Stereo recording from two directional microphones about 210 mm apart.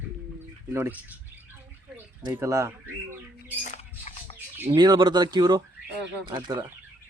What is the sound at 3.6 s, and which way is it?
Rodents, 35° left (ahead or behind).